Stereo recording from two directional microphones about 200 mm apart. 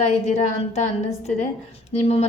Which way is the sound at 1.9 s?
30° left (ahead or behind).